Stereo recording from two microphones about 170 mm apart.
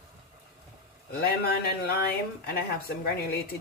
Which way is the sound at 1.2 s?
70° left (ahead or behind).